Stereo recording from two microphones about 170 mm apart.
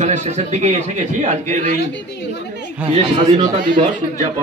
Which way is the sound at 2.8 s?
30° right (ahead or behind).